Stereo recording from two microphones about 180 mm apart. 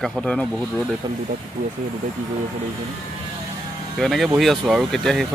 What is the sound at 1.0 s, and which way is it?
Speech, 25° right (ahead or behind).